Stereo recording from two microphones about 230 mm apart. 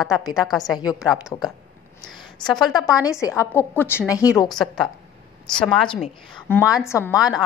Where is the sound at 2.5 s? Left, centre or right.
Centre.